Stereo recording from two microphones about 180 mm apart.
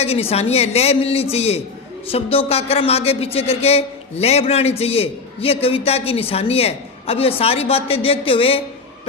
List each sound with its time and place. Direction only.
0.0 s speech: 35° left (ahead or behind)